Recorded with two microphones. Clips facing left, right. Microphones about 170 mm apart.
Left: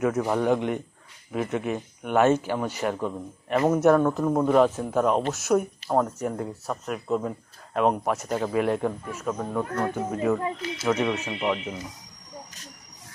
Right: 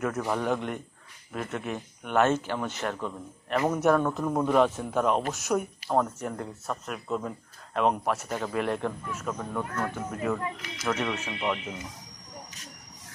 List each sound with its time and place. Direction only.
0.0 s speech: 10° left (ahead or behind)
10.4 s speech: 30° left (ahead or behind)
10.9 s speech: 10° left (ahead or behind)